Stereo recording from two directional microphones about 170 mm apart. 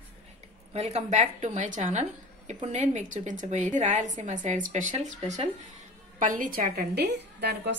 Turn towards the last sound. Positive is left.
turn(degrees=-75)  # may be behind; listen again after turning